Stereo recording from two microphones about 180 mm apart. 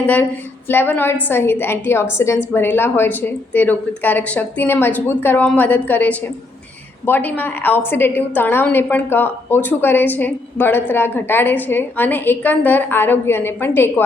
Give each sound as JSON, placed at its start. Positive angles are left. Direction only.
{"t": 0.7, "sound": "a woman's voice", "side_deg": 10}